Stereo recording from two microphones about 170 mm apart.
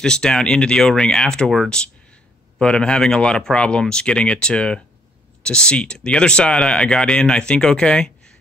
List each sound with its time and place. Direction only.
0.0 s speech: 5° left (ahead or behind)